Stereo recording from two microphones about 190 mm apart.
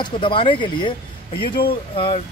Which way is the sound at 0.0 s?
25° left (ahead or behind).